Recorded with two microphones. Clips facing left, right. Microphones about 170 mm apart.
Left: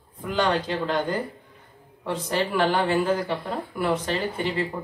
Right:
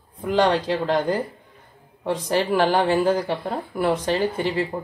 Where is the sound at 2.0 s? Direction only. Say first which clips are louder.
Right 3 dB; 35° right (ahead or behind).